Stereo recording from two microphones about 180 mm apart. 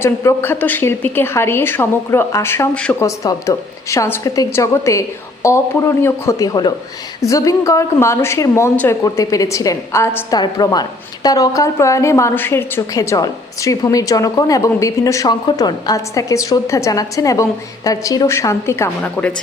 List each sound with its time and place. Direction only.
0.0 s a woman's voice: 15° left (ahead or behind)